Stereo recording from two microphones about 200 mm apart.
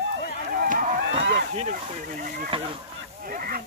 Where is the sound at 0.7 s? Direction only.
40° right (ahead or behind).